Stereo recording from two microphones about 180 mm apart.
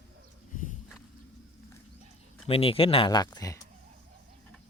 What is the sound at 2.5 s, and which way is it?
Speech, 30° left (ahead or behind).